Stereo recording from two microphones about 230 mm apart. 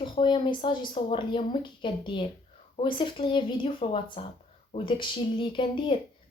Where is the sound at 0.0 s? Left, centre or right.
Left.